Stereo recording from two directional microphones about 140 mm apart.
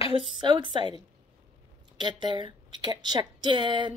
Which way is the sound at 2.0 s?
35° right (ahead or behind).